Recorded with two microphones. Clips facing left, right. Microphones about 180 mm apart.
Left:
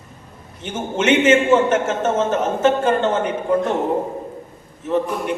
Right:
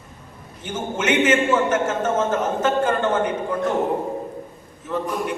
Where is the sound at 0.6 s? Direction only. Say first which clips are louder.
Left 4 dB; 25° left (ahead or behind).